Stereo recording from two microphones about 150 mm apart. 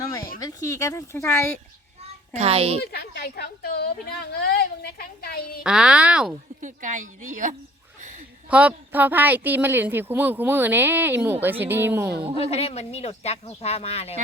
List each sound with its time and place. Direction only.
0.0 s a sound: 20° left (ahead or behind)
0.3 s speech: 25° left (ahead or behind)
2.3 s a child's voice: 40° right (ahead or behind)
2.8 s a woman's voice: 90° left
5.6 s a woman's voice: 5° right (ahead or behind)
6.6 s a woman's voice: 55° right (ahead or behind)
8.4 s a woman's voice: 10° right (ahead or behind)
12.4 s a woman's voice: 40° left (ahead or behind)